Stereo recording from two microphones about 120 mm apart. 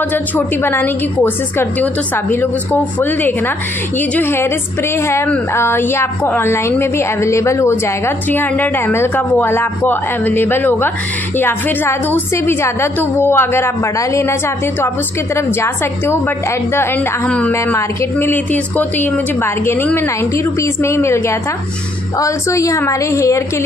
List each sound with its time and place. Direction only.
0.7 s a woman's voice: 20° left (ahead or behind)
15.3 s a woman's voice: 20° left (ahead or behind)
17.5 s a woman's voice: 20° left (ahead or behind)